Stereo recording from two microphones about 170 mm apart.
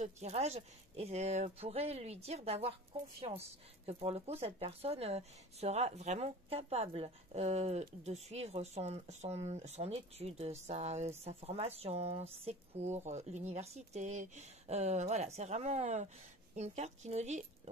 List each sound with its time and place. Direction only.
0.0 s speech: 40° right (ahead or behind)